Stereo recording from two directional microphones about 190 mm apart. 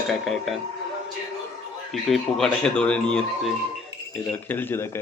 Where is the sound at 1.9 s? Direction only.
Centre (ahead or behind).